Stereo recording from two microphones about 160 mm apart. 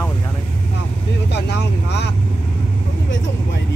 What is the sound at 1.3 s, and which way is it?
Vehicle, 90° left.